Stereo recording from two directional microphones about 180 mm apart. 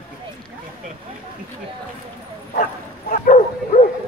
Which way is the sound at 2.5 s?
45° left (ahead or behind).